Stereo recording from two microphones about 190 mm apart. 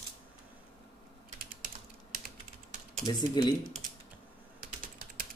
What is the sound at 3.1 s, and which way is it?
Speech, 20° left (ahead or behind).